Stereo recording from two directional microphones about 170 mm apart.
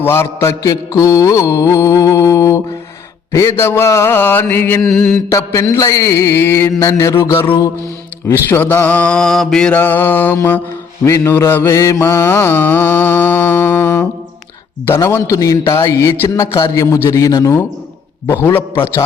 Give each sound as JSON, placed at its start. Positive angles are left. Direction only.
{"t": 0.0, "sound": "mantra", "side_deg": 15}
{"t": 5.3, "sound": "mantra", "side_deg": 20}
{"t": 14.8, "sound": "a man's voice", "side_deg": 15}
{"t": 18.4, "sound": "mantra", "side_deg": 15}